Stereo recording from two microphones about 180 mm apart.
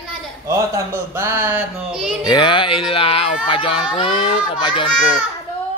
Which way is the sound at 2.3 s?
25° left (ahead or behind).